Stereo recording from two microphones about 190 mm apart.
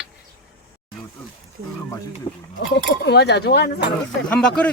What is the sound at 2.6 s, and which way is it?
Speech, 65° left (ahead or behind).